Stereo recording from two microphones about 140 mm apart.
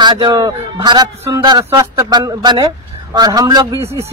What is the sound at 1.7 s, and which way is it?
A man's voice, 20° right (ahead or behind).